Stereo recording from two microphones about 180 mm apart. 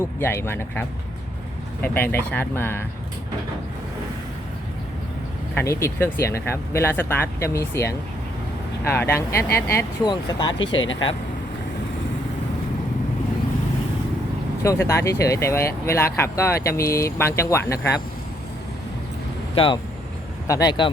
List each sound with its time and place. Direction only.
0.2 s speech: 10° left (ahead or behind)
5.5 s speech: 15° left (ahead or behind)
10.7 s speech: 90° left
14.6 s speech: 15° left (ahead or behind)
19.5 s speech: 30° left (ahead or behind)